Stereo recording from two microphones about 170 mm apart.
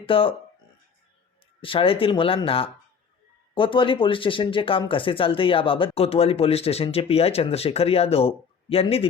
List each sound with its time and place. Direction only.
0.0 s speech: 30° left (ahead or behind)
1.6 s speech: 30° left (ahead or behind)